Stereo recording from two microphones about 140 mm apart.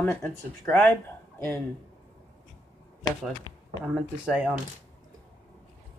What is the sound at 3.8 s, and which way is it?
Speech, 5° right (ahead or behind).